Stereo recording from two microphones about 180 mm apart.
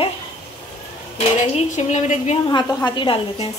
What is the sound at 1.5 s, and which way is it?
Speech, 40° left (ahead or behind).